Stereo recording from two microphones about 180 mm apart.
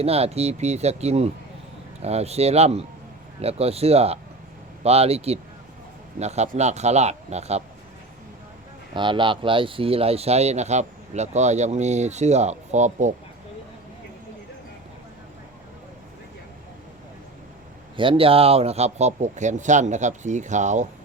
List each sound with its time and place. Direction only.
0.0 s speech: 35° right (ahead or behind)
8.9 s speech: 25° right (ahead or behind); by 13.1 s 40° right (ahead or behind)
17.9 s speech: 30° right (ahead or behind)